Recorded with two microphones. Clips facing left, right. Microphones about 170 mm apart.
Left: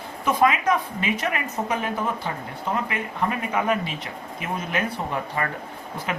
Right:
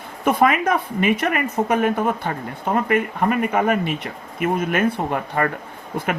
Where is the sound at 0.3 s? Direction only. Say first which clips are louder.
Right 3 dB; 55° right (ahead or behind).